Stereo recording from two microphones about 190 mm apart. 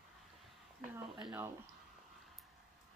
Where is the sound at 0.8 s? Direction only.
10° right (ahead or behind).